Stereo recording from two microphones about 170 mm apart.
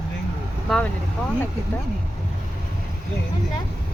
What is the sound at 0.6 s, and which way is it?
Speech, 5° left (ahead or behind).